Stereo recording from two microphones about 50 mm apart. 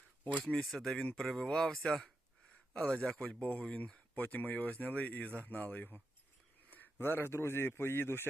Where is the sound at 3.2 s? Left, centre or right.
Left.